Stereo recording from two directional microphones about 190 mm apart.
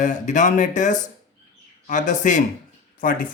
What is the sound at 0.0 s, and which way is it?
Speech, 40° left (ahead or behind).